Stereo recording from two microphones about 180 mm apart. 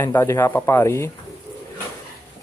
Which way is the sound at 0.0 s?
15° left (ahead or behind).